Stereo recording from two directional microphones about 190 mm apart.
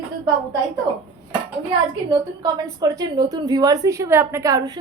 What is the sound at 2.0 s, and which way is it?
A woman's voice, 20° right (ahead or behind).